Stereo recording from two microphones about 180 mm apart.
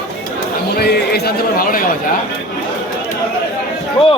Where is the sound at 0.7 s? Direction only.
60° left (ahead or behind).